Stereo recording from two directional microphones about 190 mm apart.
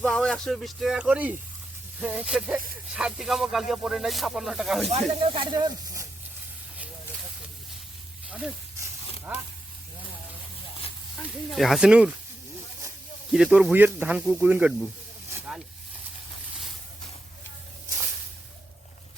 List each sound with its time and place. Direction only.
0.0 s speech: 5° left (ahead or behind)
4.9 s speech: 35° right (ahead or behind); by 6.1 s 20° right (ahead or behind)
11.2 s speech: centre (ahead or behind)
13.3 s speech: 5° right (ahead or behind)
15.3 s snake: 5° right (ahead or behind)